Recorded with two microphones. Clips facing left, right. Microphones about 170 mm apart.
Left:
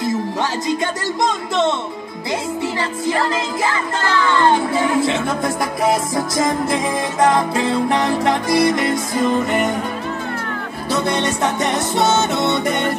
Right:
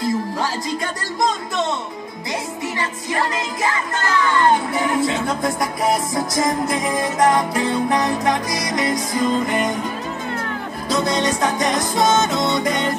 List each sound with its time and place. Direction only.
0.0 s music: 25° left (ahead or behind)
2.6 s music: 30° left (ahead or behind)
10.9 s music: 25° left (ahead or behind)